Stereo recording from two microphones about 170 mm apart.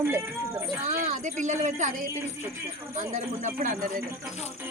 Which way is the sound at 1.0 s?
45° right (ahead or behind).